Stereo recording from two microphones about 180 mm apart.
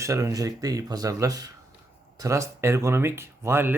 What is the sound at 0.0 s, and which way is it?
Speech, 15° right (ahead or behind).